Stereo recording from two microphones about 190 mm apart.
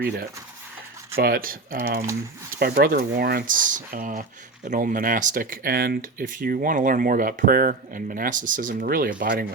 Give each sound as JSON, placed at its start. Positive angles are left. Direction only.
{"t": 1.2, "sound": "speech", "side_deg": -50}
{"t": 9.2, "sound": "speech", "side_deg": -60}